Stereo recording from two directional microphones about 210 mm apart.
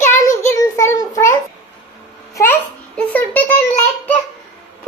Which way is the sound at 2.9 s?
10° left (ahead or behind).